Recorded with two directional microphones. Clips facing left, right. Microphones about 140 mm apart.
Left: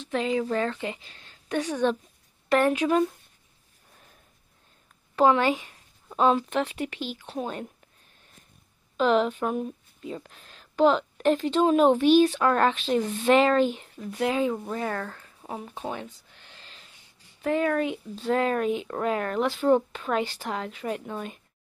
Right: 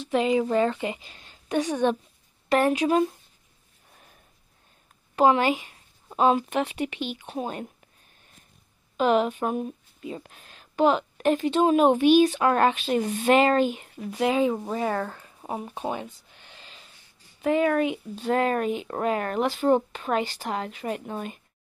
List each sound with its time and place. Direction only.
0.0 s speech: 15° right (ahead or behind)
5.2 s speech: 5° right (ahead or behind)
8.9 s speech: 5° right (ahead or behind)
14.9 s a sound: 10° right (ahead or behind)
17.4 s speech: 5° right (ahead or behind)